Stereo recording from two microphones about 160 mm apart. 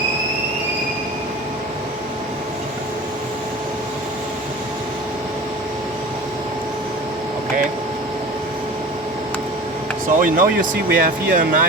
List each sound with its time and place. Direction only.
10.2 s speech: 60° right (ahead or behind)